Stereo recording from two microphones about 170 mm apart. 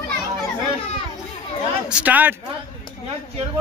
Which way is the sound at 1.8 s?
10° right (ahead or behind).